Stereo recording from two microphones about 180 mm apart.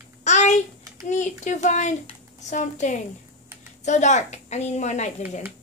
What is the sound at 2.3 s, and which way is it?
A woman's voice, 40° left (ahead or behind).